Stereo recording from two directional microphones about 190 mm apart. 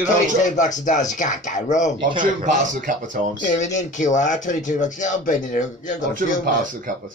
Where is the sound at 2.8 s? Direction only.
45° right (ahead or behind).